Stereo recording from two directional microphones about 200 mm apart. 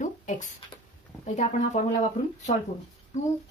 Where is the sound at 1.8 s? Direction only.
35° left (ahead or behind).